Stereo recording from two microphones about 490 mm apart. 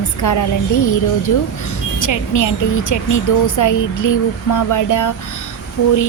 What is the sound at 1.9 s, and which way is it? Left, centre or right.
A woman's voice, left.